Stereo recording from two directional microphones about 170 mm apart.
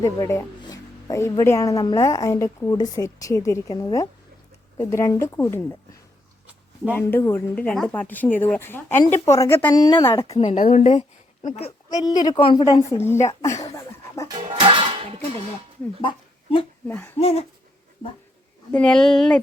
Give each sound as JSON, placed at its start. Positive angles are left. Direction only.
{"t": 0.0, "sound": "a woman's voice", "side_deg": 20}
{"t": 6.9, "sound": "a woman's voice", "side_deg": 15}
{"t": 11.9, "sound": "a woman's voice", "side_deg": 20}
{"t": 14.3, "sound": "music", "side_deg": -30}
{"t": 16.0, "sound": "speech", "side_deg": 30}
{"t": 16.8, "sound": "speech", "side_deg": 5}
{"t": 17.2, "sound": "a woman's voice", "side_deg": 35}
{"t": 18.7, "sound": "speech", "side_deg": 5}